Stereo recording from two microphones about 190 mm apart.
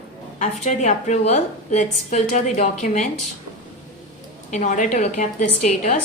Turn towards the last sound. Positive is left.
turn(degrees=40)  # may be behind; listen again after turning